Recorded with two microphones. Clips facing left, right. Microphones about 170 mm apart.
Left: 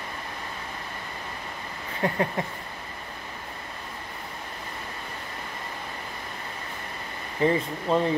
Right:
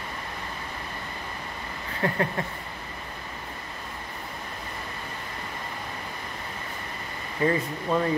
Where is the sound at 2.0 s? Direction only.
20° left (ahead or behind).